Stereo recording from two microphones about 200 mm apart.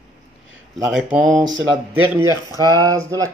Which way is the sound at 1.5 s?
70° right (ahead or behind).